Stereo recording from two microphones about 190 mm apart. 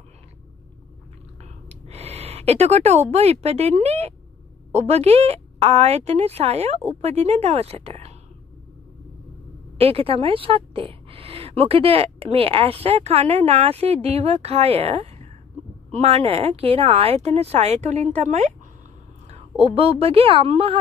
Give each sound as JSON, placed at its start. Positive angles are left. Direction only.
{"t": 1.4, "sound": "a sound", "side_deg": -35}
{"t": 4.7, "sound": "a woman's voice", "side_deg": -35}
{"t": 9.8, "sound": "a woman's voice", "side_deg": -30}